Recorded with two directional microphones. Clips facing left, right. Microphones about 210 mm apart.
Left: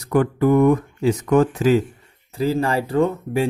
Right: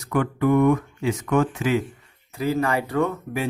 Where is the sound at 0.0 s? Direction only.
35° left (ahead or behind).